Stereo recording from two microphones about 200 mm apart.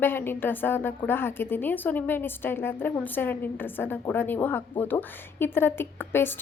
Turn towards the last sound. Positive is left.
turn(degrees=10)  # may be behind; listen again after turning